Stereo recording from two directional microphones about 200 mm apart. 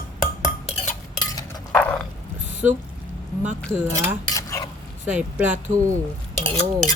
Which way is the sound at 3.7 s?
10° right (ahead or behind).